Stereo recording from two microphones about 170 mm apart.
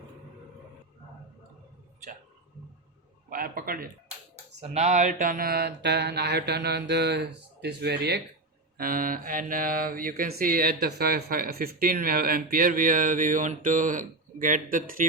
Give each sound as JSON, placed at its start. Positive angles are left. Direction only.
{"t": 3.2, "sound": "a man's voice", "side_deg": -60}
{"t": 4.6, "sound": "speech", "side_deg": -40}
{"t": 5.2, "sound": "mantra", "side_deg": -55}
{"t": 8.8, "sound": "mantra", "side_deg": -55}